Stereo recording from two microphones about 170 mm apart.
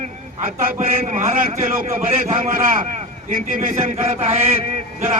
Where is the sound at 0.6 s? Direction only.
55° right (ahead or behind).